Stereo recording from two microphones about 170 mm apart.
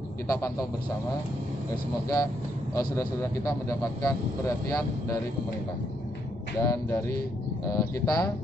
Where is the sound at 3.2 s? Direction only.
20° left (ahead or behind).